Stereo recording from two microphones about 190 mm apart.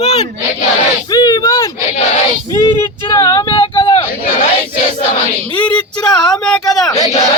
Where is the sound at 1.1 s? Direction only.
20° left (ahead or behind).